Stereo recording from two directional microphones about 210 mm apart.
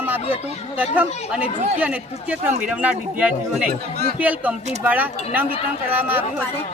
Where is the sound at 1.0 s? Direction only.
30° left (ahead or behind).